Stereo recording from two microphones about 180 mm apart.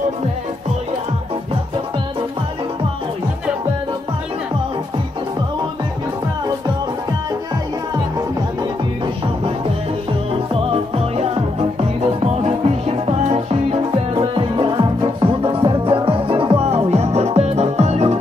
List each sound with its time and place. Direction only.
12.0 s music: 35° right (ahead or behind)